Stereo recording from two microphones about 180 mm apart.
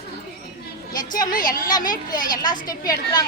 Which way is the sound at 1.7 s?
20° left (ahead or behind).